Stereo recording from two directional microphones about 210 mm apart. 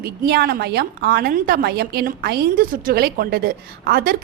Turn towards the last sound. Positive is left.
turn(degrees=-45)  # may be behind; listen again after turning